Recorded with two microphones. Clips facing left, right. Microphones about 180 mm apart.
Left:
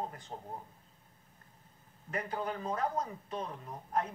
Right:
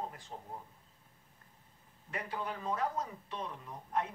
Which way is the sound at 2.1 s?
40° left (ahead or behind).